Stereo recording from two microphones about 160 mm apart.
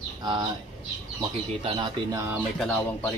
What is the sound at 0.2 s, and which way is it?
Speech, 25° right (ahead or behind).